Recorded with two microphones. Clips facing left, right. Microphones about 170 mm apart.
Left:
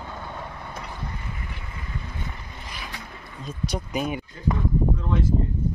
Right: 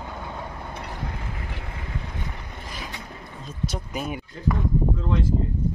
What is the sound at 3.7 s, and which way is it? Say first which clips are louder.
Speech: left 7 dB; centre (ahead or behind).